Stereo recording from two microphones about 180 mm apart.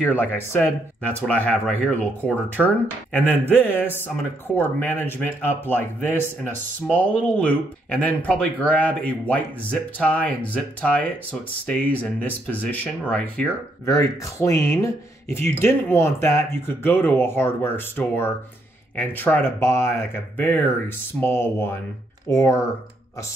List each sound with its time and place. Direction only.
0.0 s speech: 10° left (ahead or behind)
13.8 s speech: 15° left (ahead or behind)